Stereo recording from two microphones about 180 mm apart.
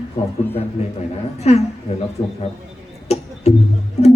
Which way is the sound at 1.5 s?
35° left (ahead or behind).